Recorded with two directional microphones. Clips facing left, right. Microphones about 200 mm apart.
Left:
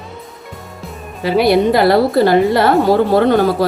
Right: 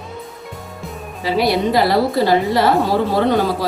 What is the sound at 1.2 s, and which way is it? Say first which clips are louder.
A woman's voice: left 5 dB; 55° left (ahead or behind).